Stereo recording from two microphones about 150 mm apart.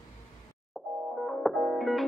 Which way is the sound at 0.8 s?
Centre (ahead or behind).